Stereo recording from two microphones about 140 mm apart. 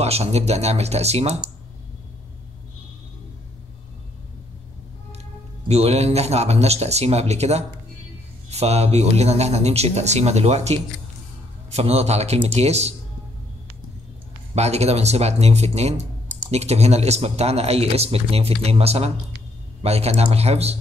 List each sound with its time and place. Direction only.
0.0 s speech: 50° right (ahead or behind)
5.7 s speech: 50° right (ahead or behind)
14.5 s speech: 50° right (ahead or behind)